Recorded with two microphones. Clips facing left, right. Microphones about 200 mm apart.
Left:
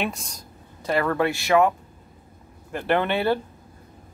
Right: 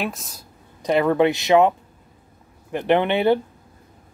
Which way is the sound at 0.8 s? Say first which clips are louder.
Right 5 dB; 20° right (ahead or behind).